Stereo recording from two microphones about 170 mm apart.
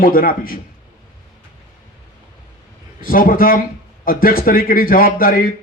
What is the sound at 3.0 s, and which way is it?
A man's voice, 55° left (ahead or behind).